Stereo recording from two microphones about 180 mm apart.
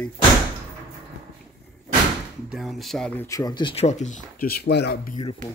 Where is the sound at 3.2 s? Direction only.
20° left (ahead or behind); by 5.0 s 65° left (ahead or behind).